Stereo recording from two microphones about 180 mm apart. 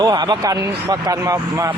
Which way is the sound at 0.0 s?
20° right (ahead or behind).